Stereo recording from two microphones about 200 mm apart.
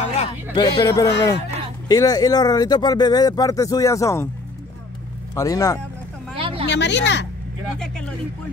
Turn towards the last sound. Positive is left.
turn(degrees=60)  # may be behind; listen again after turning